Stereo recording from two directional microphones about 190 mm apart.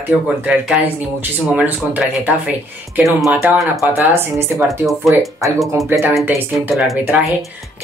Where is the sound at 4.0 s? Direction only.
15° right (ahead or behind).